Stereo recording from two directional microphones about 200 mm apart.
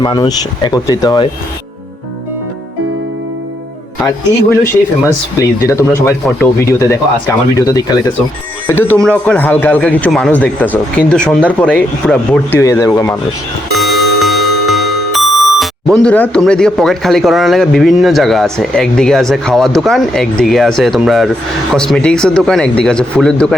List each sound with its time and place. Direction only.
0.0 s speech: 20° left (ahead or behind)
5.4 s speech: 15° left (ahead or behind)
13.7 s music: centre (ahead or behind)
20.4 s speech: centre (ahead or behind)